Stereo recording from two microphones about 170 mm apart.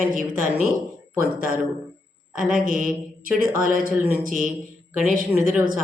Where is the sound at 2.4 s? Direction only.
55° right (ahead or behind).